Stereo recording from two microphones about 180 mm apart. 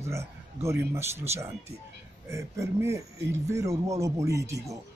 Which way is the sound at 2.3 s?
15° right (ahead or behind).